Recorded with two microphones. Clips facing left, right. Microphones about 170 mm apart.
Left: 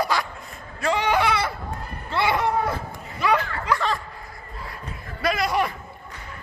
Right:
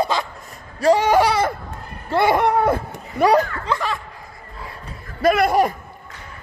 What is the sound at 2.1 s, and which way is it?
Speech, 50° right (ahead or behind).